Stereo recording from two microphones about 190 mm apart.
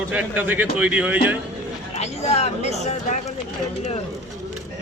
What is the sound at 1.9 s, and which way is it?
Speech, 35° left (ahead or behind).